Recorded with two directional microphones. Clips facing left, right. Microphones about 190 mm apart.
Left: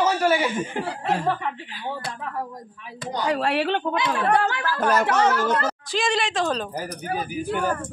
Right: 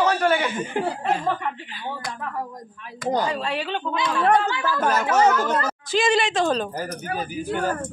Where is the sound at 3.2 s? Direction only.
70° left (ahead or behind).